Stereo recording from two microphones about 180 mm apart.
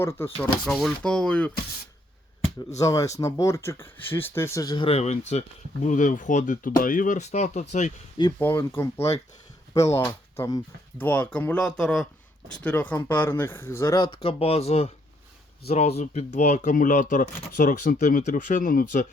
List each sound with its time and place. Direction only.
0.0 s speech: 15° left (ahead or behind)
0.6 s speech: centre (ahead or behind)
2.7 s speech: 20° left (ahead or behind)
4.9 s speech: 40° left (ahead or behind)
8.4 s speech: 10° left (ahead or behind)
14.2 s speech: 30° left (ahead or behind); by 19.0 s 50° left (ahead or behind)